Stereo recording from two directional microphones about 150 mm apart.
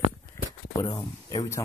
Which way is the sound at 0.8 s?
25° left (ahead or behind).